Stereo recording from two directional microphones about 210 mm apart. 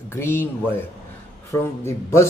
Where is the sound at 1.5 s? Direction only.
10° left (ahead or behind).